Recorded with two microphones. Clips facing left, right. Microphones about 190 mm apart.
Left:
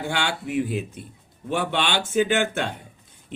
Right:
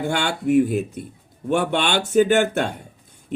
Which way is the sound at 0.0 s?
45° right (ahead or behind).